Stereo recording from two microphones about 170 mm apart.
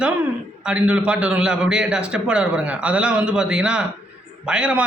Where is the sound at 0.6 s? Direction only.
5° right (ahead or behind).